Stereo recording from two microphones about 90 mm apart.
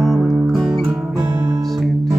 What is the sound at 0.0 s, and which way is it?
Music, centre (ahead or behind).